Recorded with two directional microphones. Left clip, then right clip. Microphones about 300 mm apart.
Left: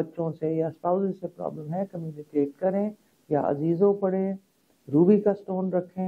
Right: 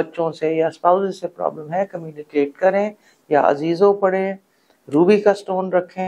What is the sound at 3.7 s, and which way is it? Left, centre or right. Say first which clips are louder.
Speech: right 8 dB; centre.